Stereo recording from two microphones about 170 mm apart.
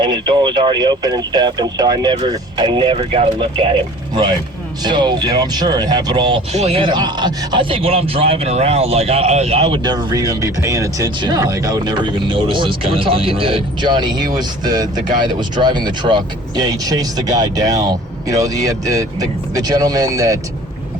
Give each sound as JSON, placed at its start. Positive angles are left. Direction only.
{"t": 0.0, "sound": "speech", "side_deg": -25}
{"t": 6.5, "sound": "speech", "side_deg": -40}